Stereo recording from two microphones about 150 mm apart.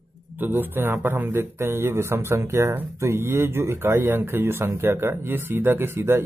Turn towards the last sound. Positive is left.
turn(degrees=-15)  # may be behind; listen again after turning